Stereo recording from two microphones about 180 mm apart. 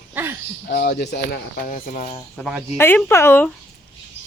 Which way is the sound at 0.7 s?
65° left (ahead or behind).